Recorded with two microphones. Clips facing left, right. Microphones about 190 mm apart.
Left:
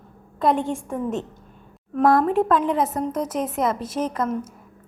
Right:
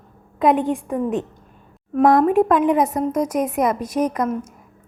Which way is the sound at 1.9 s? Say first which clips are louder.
Right 3 dB; 15° right (ahead or behind).